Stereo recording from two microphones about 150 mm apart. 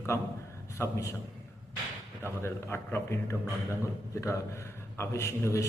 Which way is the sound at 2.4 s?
15° left (ahead or behind).